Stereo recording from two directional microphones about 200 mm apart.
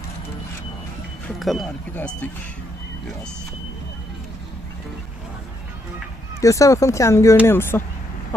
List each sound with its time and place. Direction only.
1.4 s speech: centre (ahead or behind)
6.4 s speech: 15° left (ahead or behind)